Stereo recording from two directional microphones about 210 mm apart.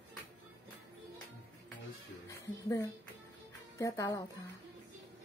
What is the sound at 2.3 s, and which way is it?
Music, 15° left (ahead or behind).